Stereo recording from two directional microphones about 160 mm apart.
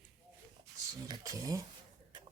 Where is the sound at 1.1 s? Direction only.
20° right (ahead or behind).